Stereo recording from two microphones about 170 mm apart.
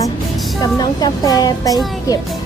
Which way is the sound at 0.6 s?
25° left (ahead or behind).